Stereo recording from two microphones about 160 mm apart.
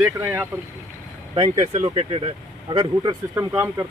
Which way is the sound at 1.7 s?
35° right (ahead or behind).